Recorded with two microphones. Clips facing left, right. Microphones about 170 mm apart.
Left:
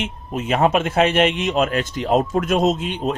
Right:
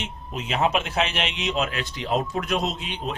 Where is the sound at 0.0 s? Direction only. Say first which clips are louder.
Left 7 dB; 50° left (ahead or behind).